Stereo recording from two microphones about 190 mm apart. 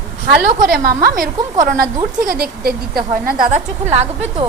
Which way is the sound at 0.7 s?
50° right (ahead or behind).